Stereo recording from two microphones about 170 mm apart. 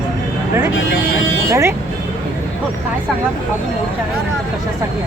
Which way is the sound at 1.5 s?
15° right (ahead or behind).